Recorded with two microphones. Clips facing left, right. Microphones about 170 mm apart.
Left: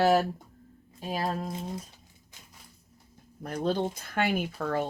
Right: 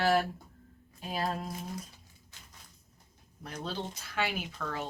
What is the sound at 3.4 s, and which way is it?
Speech, 50° left (ahead or behind).